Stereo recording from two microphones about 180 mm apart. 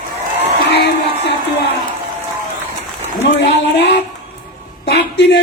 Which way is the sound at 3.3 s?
70° left (ahead or behind).